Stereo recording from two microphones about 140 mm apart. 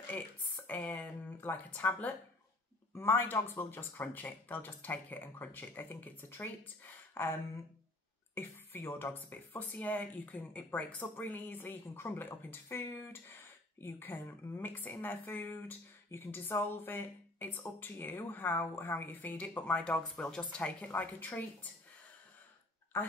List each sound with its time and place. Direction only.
0.1 s speech: 10° left (ahead or behind)
8.4 s speech: 15° left (ahead or behind)
22.9 s speech: 15° left (ahead or behind)